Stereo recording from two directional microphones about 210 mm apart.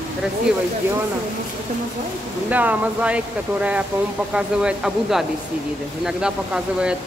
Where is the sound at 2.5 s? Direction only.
5° right (ahead or behind).